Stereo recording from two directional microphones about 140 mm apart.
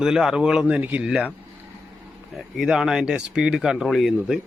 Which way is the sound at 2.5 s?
5° right (ahead or behind).